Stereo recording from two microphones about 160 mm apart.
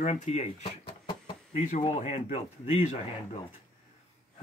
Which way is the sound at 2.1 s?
45° left (ahead or behind).